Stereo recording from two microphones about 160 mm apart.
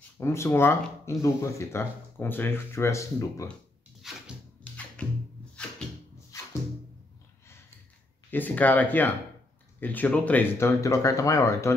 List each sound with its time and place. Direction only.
0.2 s speech: 15° left (ahead or behind)
4.0 s a sound: centre (ahead or behind)
5.0 s music: 10° left (ahead or behind)
8.3 s speech: 10° left (ahead or behind)